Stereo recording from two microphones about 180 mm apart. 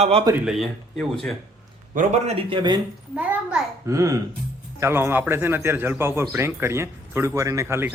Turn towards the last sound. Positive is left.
turn(degrees=-15)  # may be behind; listen again after turning